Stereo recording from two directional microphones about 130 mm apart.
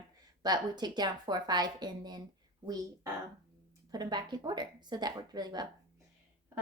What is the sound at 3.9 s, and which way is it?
A woman's voice, 35° right (ahead or behind).